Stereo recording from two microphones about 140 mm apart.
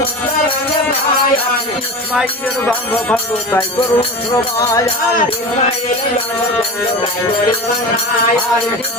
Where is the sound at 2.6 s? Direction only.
15° left (ahead or behind).